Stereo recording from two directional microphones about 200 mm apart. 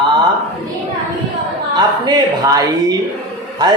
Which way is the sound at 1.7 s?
20° right (ahead or behind).